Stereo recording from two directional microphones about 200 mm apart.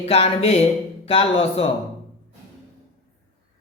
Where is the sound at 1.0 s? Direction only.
30° left (ahead or behind).